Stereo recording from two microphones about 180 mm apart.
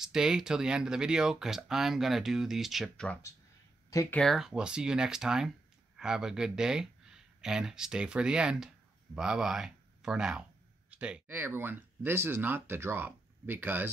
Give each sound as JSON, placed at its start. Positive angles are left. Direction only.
{"t": 0.0, "sound": "speech", "side_deg": -5}
{"t": 3.9, "sound": "speech", "side_deg": 20}
{"t": 4.2, "sound": "speech", "side_deg": 0}